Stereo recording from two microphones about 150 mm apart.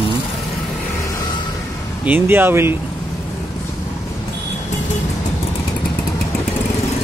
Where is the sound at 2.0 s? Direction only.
15° right (ahead or behind).